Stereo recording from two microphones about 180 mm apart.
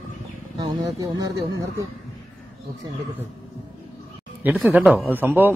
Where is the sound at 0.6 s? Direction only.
20° right (ahead or behind).